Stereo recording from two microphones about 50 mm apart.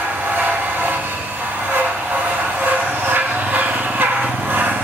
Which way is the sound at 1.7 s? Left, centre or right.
Right.